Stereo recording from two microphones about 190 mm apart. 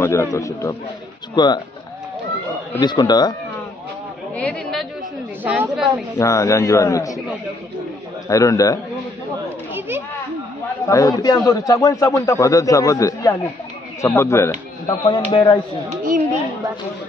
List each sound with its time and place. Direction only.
0.0 s a man's voice: 15° left (ahead or behind)
2.8 s a man's voice: 20° left (ahead or behind)
4.4 s a woman's voice: 5° left (ahead or behind)
5.4 s a woman's voice: 10° right (ahead or behind)
6.1 s a man's voice: 15° left (ahead or behind)
8.3 s a man's voice: 15° left (ahead or behind)
9.8 s children playing: 10° right (ahead or behind)
10.9 s a man's voice: 20° left (ahead or behind)
15.0 s a man's voice: 25° left (ahead or behind)